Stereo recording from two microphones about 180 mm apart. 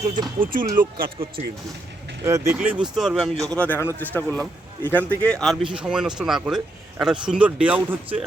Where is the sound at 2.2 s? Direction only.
15° right (ahead or behind).